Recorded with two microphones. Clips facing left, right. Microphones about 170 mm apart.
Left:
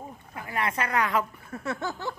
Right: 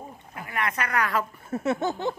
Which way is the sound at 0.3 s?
30° left (ahead or behind).